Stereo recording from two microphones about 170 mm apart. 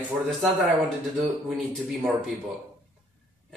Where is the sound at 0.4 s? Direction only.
Centre (ahead or behind).